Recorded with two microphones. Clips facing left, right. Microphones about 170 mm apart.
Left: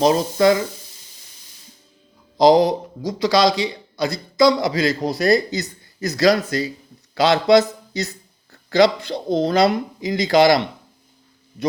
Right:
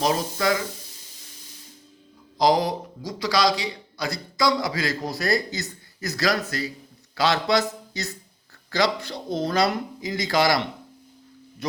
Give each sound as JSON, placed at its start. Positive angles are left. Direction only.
{"t": 0.0, "sound": "a man's voice", "side_deg": 25}
{"t": 2.4, "sound": "a man's voice", "side_deg": 20}